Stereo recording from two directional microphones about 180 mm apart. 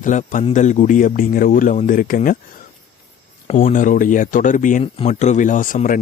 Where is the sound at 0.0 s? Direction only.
45° left (ahead or behind).